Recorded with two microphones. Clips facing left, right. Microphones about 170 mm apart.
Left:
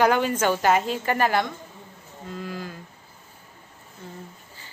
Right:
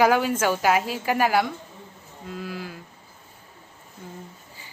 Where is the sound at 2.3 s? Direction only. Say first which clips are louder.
Even; 5° right (ahead or behind).